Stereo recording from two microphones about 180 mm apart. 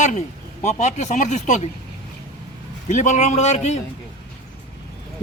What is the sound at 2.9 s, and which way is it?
Speech, 40° left (ahead or behind).